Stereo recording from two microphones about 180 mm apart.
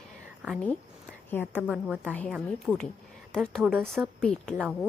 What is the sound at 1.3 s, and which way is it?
A woman's voice, 10° left (ahead or behind).